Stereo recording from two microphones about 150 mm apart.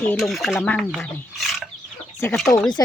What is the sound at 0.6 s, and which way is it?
Speech, 10° left (ahead or behind).